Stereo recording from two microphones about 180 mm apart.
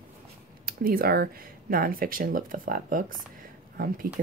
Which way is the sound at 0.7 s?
55° right (ahead or behind).